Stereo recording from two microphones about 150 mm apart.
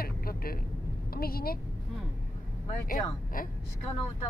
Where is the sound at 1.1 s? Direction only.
90° left.